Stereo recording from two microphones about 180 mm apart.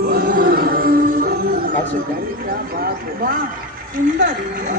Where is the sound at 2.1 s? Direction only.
55° right (ahead or behind).